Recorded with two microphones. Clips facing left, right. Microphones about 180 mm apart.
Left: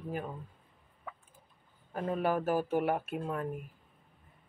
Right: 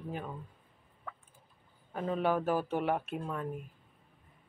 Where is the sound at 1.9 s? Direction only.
5° left (ahead or behind).